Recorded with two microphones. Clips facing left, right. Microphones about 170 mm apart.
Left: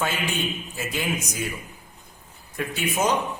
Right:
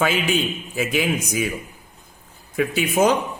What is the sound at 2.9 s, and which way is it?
Speech, 55° right (ahead or behind).